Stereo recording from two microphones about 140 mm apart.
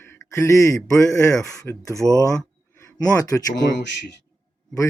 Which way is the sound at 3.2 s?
25° left (ahead or behind).